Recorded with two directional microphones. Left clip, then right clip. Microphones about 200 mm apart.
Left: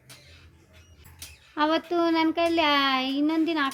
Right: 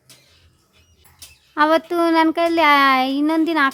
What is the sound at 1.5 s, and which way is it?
A child's voice, 40° right (ahead or behind).